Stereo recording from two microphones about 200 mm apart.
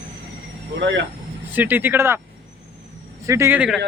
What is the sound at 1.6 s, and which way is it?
Speech, 10° right (ahead or behind).